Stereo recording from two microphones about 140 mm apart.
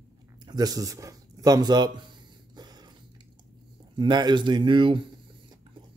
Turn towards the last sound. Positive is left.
turn(degrees=-35)  # may be behind; listen again after turning